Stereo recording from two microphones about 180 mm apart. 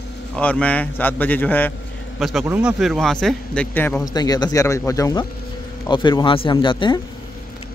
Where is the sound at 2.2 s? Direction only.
Centre (ahead or behind).